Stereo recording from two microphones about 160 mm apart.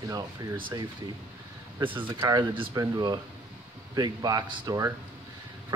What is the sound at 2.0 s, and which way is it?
Speech, 30° right (ahead or behind).